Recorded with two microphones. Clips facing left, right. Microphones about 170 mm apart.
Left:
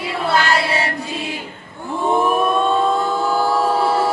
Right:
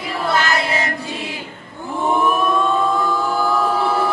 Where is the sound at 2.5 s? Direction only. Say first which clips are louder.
Left 1 dB; 30° left (ahead or behind).